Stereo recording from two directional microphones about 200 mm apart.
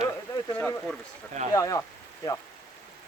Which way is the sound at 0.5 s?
10° left (ahead or behind).